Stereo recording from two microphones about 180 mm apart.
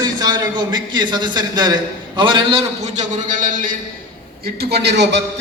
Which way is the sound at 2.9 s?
45° right (ahead or behind).